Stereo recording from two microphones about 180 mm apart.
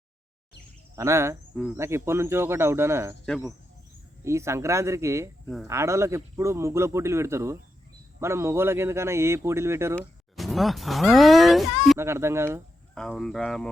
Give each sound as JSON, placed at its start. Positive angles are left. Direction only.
{"t": 0.9, "sound": "a man's voice", "side_deg": -15}
{"t": 3.2, "sound": "speech", "side_deg": 5}
{"t": 4.2, "sound": "a man's voice", "side_deg": -15}
{"t": 10.3, "sound": "speech", "side_deg": 0}
{"t": 11.9, "sound": "a man's voice", "side_deg": -15}
{"t": 12.9, "sound": "speech", "side_deg": 0}